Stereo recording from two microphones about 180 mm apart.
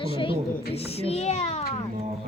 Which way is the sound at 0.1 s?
30° left (ahead or behind).